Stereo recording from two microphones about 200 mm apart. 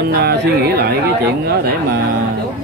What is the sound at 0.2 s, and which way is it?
Speech, 50° right (ahead or behind).